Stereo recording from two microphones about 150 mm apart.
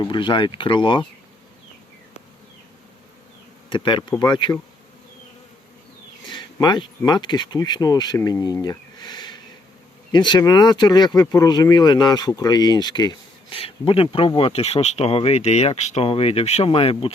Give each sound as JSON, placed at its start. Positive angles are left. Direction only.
{"t": 0.0, "sound": "speech", "side_deg": 30}
{"t": 3.7, "sound": "speech", "side_deg": 30}
{"t": 6.2, "sound": "speech", "side_deg": 30}
{"t": 8.6, "sound": "a sound", "side_deg": 30}
{"t": 10.1, "sound": "speech", "side_deg": 30}